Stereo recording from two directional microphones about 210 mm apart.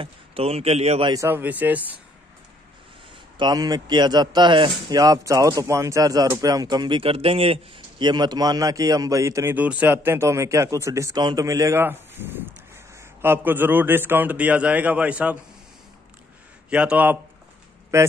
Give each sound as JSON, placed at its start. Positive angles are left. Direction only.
{"t": 0.0, "sound": "a man's voice", "side_deg": -25}
{"t": 1.1, "sound": "a man's voice", "side_deg": -10}
{"t": 3.3, "sound": "a man's voice", "side_deg": -20}
{"t": 16.7, "sound": "a man's voice", "side_deg": -5}